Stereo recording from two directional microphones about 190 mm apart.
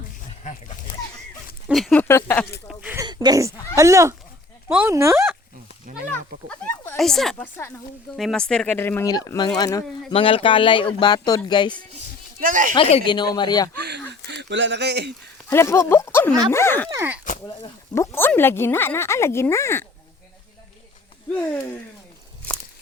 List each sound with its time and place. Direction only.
1.6 s speech: centre (ahead or behind)
2.6 s a sound: 5° right (ahead or behind)
3.0 s a sound: 20° right (ahead or behind)
3.8 s speech: 15° right (ahead or behind)
6.5 s speech: 5° left (ahead or behind)
8.1 s speech: centre (ahead or behind); by 9.8 s 20° left (ahead or behind)
10.1 s speech: 30° left (ahead or behind)
12.4 s speech: 45° right (ahead or behind)
12.7 s speech: 30° left (ahead or behind)
13.7 s speech: 60° right (ahead or behind)
15.4 s speech: 15° left (ahead or behind)
16.9 s speech: 10° right (ahead or behind)
17.4 s speech: 15° left (ahead or behind)